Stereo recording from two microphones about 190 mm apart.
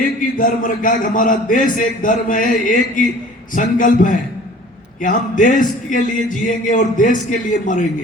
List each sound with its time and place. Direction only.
0.0 s a man's voice: 45° left (ahead or behind)